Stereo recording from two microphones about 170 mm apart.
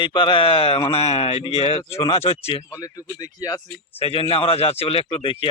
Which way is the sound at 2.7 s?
20° left (ahead or behind).